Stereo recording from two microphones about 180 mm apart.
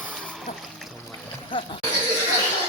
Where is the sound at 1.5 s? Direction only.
30° left (ahead or behind).